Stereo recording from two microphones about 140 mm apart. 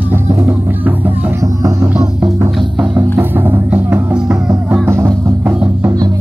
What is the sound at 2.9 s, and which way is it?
Music, 15° right (ahead or behind).